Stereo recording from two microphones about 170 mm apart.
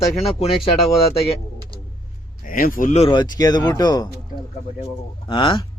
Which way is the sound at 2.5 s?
55° left (ahead or behind).